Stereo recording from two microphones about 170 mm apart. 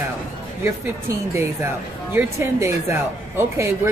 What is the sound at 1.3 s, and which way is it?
Speech, 15° right (ahead or behind).